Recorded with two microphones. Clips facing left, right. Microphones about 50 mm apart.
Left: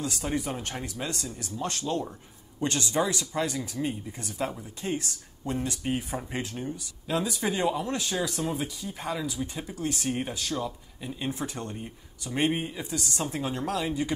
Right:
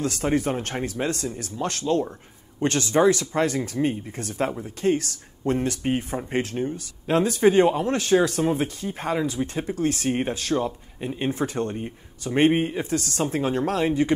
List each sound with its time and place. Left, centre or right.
0.0 s speech: right
4.5 s speech: right